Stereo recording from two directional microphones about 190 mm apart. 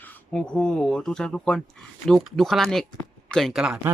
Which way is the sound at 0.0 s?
10° left (ahead or behind).